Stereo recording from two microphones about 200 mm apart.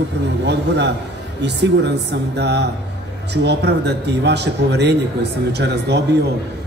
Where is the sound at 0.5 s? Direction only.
60° right (ahead or behind).